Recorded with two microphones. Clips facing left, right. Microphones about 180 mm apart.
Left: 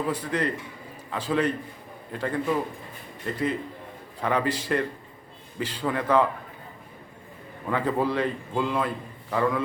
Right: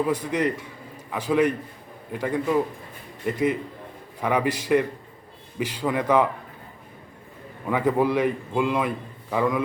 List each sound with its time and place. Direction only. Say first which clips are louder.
0.1 s a man's voice: right 3 dB; 15° right (ahead or behind)
7.7 s a man's voice: right 4 dB; 15° right (ahead or behind)